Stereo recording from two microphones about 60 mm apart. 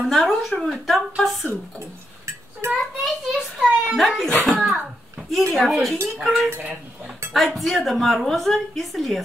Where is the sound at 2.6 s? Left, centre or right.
Right.